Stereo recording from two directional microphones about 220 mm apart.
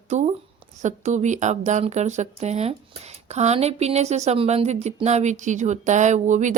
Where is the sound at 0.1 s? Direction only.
30° right (ahead or behind).